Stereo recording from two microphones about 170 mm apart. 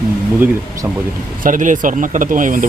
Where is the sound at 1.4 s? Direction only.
50° right (ahead or behind).